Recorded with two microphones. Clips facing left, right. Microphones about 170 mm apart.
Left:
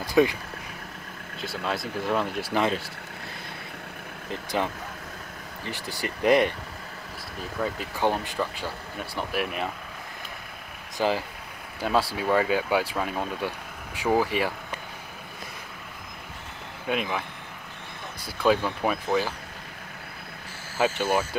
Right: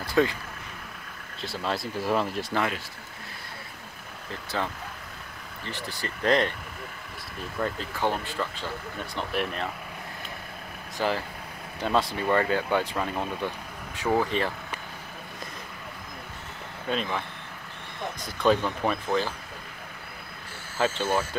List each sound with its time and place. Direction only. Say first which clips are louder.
0.0 s vehicle: left 3 dB; 15° left (ahead or behind)
1.4 s speech: even; centre (ahead or behind)
4.3 s speech: left 3 dB; 15° left (ahead or behind)
5.7 s speech: left 2 dB; 10° left (ahead or behind)
7.6 s speech: left 2 dB; 15° left (ahead or behind)
11.0 s speech: left 2 dB; 15° left (ahead or behind)
16.9 s speech: left 1 dB; 10° left (ahead or behind)
18.2 s speech: even; 5° left (ahead or behind)
20.7 s speech: left 2 dB; 15° left (ahead or behind)